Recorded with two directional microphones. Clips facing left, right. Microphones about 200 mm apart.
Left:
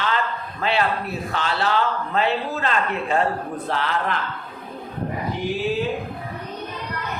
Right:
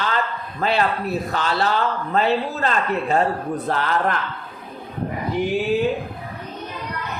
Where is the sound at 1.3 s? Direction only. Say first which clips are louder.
Left 1 dB; 40° right (ahead or behind).